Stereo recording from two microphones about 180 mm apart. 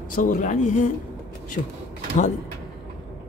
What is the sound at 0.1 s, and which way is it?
Speech, 50° left (ahead or behind).